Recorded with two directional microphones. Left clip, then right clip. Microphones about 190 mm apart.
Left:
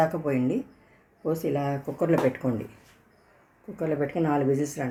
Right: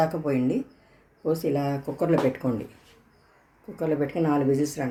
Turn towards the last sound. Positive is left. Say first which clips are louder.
# right 1 dB
turn(degrees=0)  # may be behind; listen again after turning